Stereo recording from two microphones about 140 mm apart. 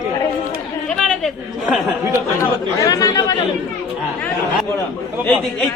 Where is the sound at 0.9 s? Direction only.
5° left (ahead or behind).